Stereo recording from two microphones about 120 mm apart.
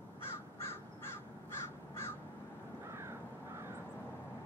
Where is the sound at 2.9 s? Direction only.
20° right (ahead or behind).